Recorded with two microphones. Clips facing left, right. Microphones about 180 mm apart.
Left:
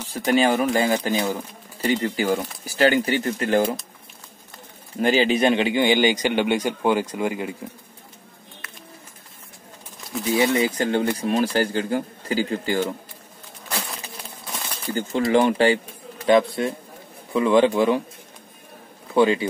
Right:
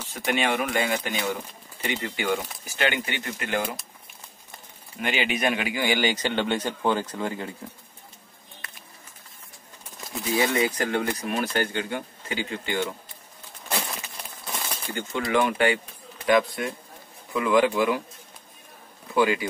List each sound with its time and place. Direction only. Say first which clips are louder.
0.1 s speech: left 6 dB; 35° left (ahead or behind)
4.9 s speech: left 8 dB; 35° left (ahead or behind); by 7.5 s 15° left (ahead or behind)
10.3 s speech: left 3 dB; 25° left (ahead or behind)
15.0 s speech: left 5 dB; 30° left (ahead or behind)
19.1 s speech: left 4 dB; 25° left (ahead or behind)